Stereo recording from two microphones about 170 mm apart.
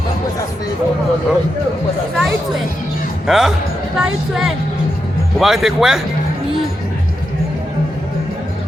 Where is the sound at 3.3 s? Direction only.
Centre (ahead or behind).